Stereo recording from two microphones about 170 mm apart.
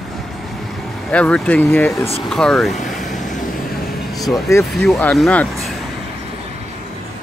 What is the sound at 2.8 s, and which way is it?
Vehicle, centre (ahead or behind).